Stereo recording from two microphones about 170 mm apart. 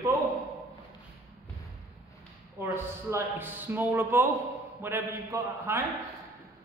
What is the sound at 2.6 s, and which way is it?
A man's voice, 15° right (ahead or behind).